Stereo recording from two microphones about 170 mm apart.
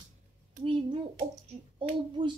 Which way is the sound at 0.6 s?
35° right (ahead or behind).